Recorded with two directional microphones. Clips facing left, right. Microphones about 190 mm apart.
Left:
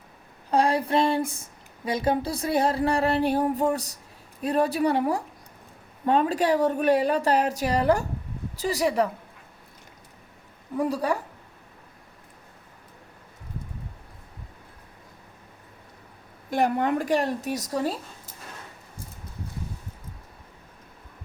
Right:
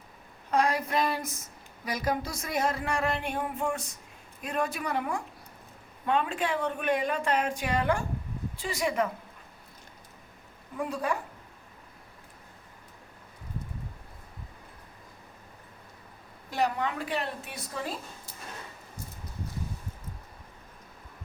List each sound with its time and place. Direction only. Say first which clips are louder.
0.5 s speech: left 5 dB; 30° left (ahead or behind)
10.8 s speech: left 6 dB; 35° left (ahead or behind)
16.5 s a woman's voice: left 6 dB; 50° left (ahead or behind)